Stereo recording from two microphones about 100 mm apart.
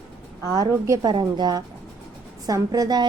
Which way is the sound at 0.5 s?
40° right (ahead or behind).